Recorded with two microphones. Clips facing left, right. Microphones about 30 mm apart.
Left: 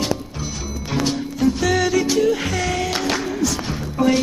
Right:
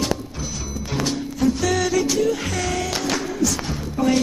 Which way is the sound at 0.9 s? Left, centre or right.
Centre.